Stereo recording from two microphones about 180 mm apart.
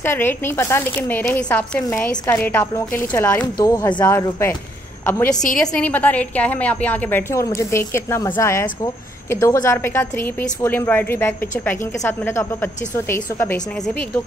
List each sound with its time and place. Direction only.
0.0 s a woman's voice: 10° left (ahead or behind)
3.5 s a woman's voice: 20° left (ahead or behind)